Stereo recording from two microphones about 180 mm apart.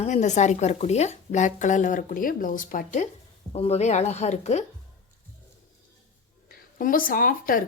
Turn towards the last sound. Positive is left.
turn(degrees=50)  # may be behind; listen again after turning